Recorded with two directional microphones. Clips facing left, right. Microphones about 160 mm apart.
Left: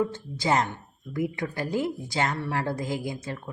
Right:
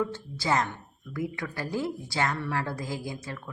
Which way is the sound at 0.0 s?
20° left (ahead or behind).